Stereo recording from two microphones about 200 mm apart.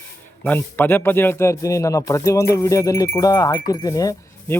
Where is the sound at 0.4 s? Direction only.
10° left (ahead or behind).